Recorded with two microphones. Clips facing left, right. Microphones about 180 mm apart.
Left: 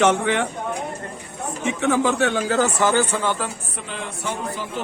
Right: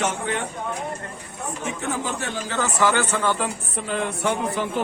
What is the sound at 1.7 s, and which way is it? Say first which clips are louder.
Speech: left 9 dB; 75° left (ahead or behind).